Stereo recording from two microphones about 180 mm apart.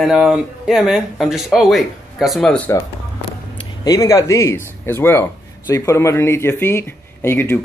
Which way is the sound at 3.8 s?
20° left (ahead or behind).